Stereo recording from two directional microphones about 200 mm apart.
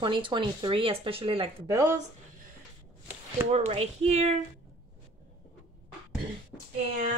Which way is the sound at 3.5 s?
30° right (ahead or behind).